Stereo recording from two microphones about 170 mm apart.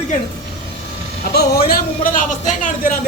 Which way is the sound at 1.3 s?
65° left (ahead or behind).